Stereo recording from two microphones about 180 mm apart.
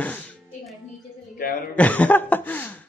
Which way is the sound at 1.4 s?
50° left (ahead or behind).